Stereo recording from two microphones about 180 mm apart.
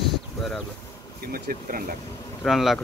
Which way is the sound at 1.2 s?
55° right (ahead or behind).